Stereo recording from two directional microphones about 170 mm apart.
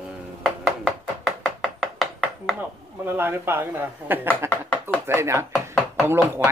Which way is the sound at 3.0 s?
15° right (ahead or behind).